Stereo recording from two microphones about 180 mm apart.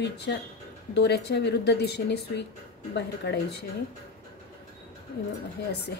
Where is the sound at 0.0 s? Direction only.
70° left (ahead or behind).